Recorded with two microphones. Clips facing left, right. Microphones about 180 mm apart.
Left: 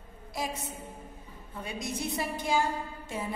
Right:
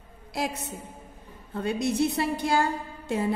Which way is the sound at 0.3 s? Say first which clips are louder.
Right 5 dB; 75° right (ahead or behind).